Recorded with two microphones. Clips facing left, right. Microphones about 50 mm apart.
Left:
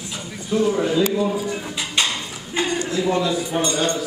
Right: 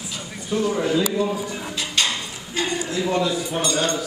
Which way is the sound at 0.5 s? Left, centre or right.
Centre.